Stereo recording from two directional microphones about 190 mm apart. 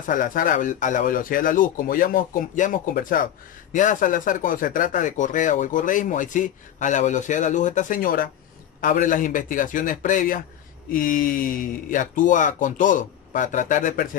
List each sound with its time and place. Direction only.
0.0 s speech: 45° left (ahead or behind)